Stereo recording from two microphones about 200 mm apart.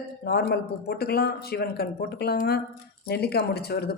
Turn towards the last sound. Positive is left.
turn(degrees=55)  # may be behind; listen again after turning